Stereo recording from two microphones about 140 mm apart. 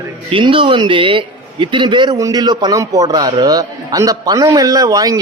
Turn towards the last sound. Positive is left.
turn(degrees=-25)  # may be behind; listen again after turning